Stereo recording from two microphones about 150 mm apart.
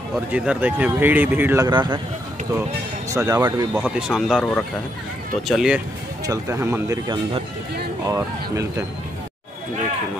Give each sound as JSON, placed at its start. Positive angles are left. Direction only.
{"t": 0.1, "sound": "speech", "side_deg": -10}
{"t": 1.7, "sound": "speech", "side_deg": -30}
{"t": 3.1, "sound": "speech", "side_deg": -20}
{"t": 3.7, "sound": "speech", "side_deg": -5}
{"t": 5.5, "sound": "speech", "side_deg": -5}
{"t": 6.2, "sound": "speech", "side_deg": -20}
{"t": 8.1, "sound": "speech", "side_deg": -20}